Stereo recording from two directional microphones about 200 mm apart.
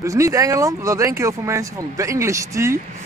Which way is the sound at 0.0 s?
15° right (ahead or behind).